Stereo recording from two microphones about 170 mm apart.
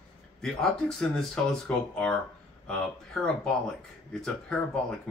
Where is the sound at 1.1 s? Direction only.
5° left (ahead or behind).